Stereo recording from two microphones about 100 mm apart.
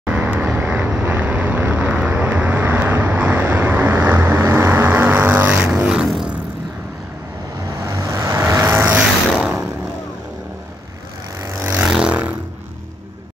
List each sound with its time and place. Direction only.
0.0 s vehicle: 15° right (ahead or behind)
5.9 s music: 5° right (ahead or behind)
7.8 s vehicle: 30° right (ahead or behind)
11.4 s vehicle: 30° right (ahead or behind)
11.8 s vehicle: 10° right (ahead or behind)